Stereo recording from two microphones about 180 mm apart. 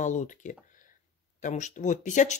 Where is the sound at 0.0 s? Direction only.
45° left (ahead or behind).